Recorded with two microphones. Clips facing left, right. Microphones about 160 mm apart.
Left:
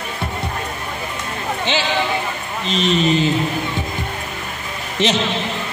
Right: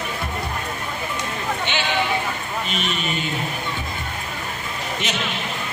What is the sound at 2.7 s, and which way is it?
Speech, 30° left (ahead or behind).